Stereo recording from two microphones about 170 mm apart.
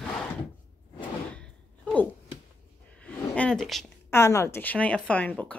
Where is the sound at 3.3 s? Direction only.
5° left (ahead or behind).